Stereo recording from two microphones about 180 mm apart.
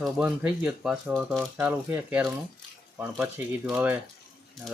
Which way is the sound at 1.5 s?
10° right (ahead or behind).